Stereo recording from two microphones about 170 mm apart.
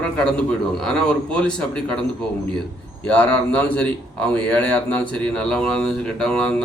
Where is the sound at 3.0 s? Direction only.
10° left (ahead or behind).